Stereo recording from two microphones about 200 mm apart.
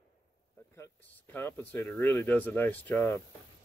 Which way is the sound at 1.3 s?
10° left (ahead or behind).